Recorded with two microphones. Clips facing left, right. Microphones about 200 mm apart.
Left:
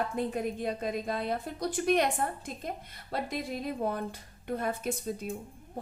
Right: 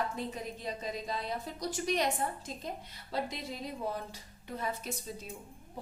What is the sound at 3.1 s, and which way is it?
A woman's voice, 55° left (ahead or behind).